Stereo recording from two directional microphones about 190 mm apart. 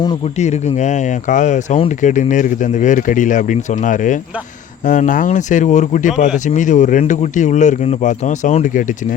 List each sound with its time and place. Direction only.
0.3 s speech: 35° left (ahead or behind)